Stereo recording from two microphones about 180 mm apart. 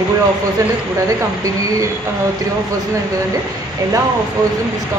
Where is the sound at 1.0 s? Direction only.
15° right (ahead or behind).